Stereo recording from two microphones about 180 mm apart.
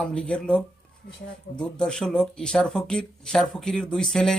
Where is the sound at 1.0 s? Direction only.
60° left (ahead or behind).